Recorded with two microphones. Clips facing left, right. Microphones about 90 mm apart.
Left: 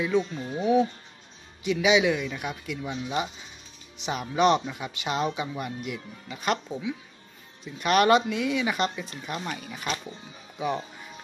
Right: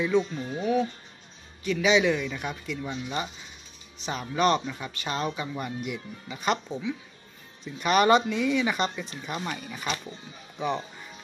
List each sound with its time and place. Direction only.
0.0 s speech: 5° left (ahead or behind)
0.6 s speech: 15° left (ahead or behind)
5.6 s speech: centre (ahead or behind)